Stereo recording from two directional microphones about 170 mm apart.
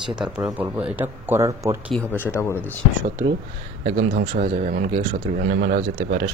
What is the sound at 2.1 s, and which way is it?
Speech, 15° left (ahead or behind).